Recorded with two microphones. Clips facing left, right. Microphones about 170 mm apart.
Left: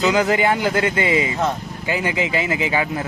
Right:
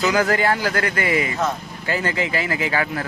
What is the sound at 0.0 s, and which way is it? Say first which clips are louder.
A man's voice: left 2 dB; 20° left (ahead or behind).